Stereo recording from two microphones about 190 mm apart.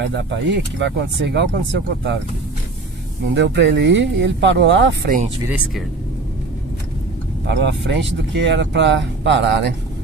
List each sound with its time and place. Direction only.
0.1 s speech: 70° right (ahead or behind)
3.3 s speech: 65° right (ahead or behind)
7.5 s speech: 65° right (ahead or behind)